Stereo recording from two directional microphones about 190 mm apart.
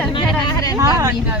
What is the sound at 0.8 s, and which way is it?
Speech, 15° right (ahead or behind).